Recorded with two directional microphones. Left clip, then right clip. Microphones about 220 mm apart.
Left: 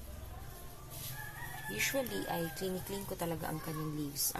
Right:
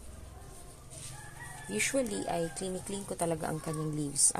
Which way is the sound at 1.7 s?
45° right (ahead or behind).